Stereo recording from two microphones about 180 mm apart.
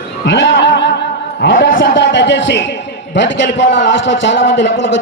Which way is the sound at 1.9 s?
85° left.